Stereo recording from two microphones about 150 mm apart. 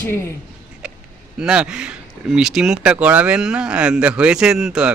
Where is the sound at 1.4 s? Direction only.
5° right (ahead or behind).